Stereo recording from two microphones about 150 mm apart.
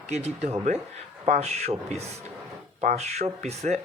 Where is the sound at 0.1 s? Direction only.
45° right (ahead or behind).